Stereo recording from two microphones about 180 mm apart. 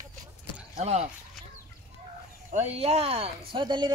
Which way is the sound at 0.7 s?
35° right (ahead or behind).